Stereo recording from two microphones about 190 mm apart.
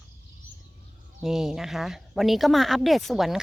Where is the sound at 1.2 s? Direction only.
Centre (ahead or behind).